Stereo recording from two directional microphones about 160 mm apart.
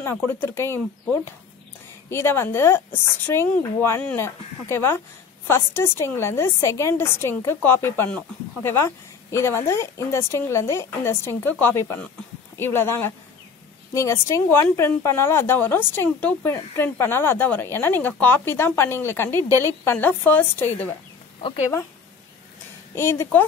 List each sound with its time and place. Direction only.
0.0 s speech: 15° left (ahead or behind)
2.0 s speech: 15° left (ahead or behind)
21.4 s speech: 35° left (ahead or behind)
22.9 s speech: 15° left (ahead or behind)